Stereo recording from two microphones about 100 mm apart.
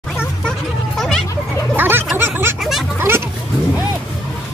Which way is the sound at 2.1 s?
20° right (ahead or behind).